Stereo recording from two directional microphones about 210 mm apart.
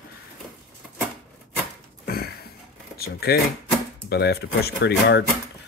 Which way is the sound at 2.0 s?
45° left (ahead or behind).